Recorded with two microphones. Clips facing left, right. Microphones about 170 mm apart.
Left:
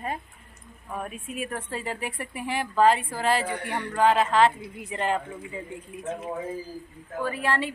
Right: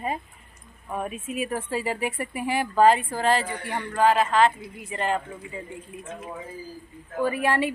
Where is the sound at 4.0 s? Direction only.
20° left (ahead or behind).